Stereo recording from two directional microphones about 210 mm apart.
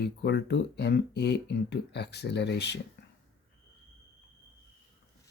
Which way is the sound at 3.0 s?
55° left (ahead or behind).